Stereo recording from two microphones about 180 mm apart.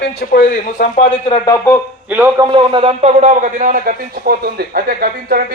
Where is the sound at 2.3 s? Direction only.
30° right (ahead or behind).